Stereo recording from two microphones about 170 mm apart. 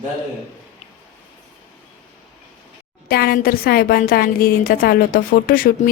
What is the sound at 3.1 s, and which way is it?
A woman's voice, 60° left (ahead or behind).